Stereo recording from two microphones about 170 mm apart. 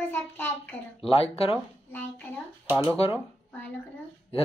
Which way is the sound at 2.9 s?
35° left (ahead or behind).